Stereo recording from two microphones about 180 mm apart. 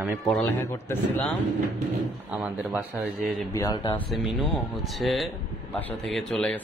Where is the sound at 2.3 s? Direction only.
10° right (ahead or behind).